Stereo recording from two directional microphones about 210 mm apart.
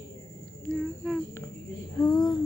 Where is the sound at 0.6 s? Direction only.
5° left (ahead or behind).